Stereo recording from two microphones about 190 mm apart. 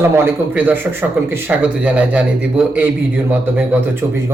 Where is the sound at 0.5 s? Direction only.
10° right (ahead or behind).